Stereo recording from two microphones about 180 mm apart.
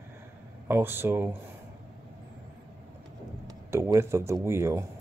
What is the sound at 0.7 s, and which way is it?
Speech, 10° right (ahead or behind).